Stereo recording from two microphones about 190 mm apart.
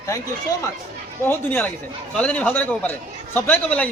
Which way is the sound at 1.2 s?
10° left (ahead or behind).